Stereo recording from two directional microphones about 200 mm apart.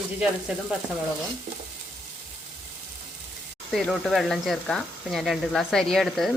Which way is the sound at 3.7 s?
Centre (ahead or behind).